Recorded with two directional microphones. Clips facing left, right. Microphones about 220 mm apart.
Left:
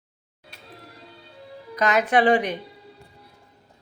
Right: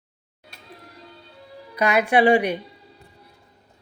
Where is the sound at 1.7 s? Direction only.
10° right (ahead or behind).